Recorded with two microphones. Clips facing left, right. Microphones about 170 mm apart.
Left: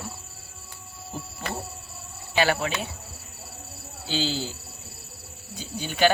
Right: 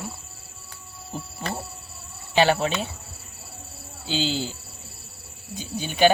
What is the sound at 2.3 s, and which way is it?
Speech, 25° right (ahead or behind).